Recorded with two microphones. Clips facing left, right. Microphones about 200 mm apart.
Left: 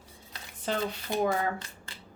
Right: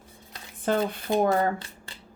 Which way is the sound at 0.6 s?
55° right (ahead or behind).